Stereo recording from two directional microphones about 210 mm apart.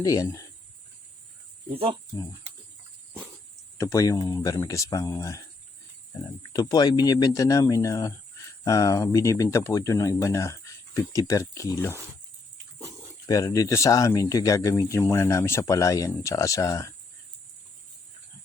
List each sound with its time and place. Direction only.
0.0 s speech: 15° left (ahead or behind)
1.7 s speech: 25° right (ahead or behind)
3.8 s speech: 15° left (ahead or behind)
6.5 s speech: 15° left (ahead or behind)
13.2 s speech: 15° left (ahead or behind)